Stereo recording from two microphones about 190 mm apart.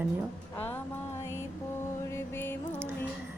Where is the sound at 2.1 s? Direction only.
10° left (ahead or behind).